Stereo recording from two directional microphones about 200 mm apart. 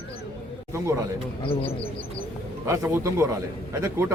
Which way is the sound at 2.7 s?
15° right (ahead or behind).